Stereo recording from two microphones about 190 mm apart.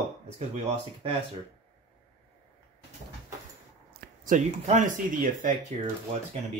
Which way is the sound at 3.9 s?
45° right (ahead or behind).